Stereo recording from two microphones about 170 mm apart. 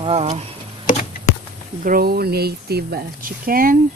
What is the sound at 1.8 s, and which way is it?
Speech, 55° right (ahead or behind).